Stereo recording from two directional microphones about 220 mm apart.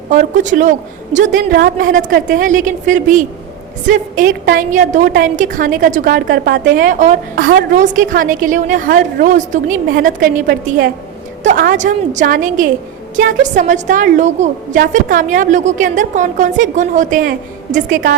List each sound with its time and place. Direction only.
0.1 s a woman's voice: 35° right (ahead or behind)
4.4 s a woman's voice: 35° right (ahead or behind)